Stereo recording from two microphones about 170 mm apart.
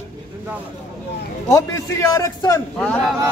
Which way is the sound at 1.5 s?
20° left (ahead or behind).